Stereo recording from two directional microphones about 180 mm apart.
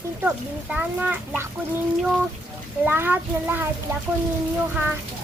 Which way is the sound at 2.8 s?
10° right (ahead or behind).